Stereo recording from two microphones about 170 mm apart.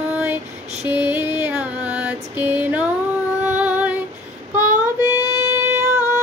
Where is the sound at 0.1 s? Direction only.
10° right (ahead or behind).